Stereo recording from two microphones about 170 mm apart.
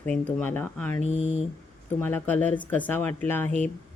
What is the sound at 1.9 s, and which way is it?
Speech, 10° left (ahead or behind).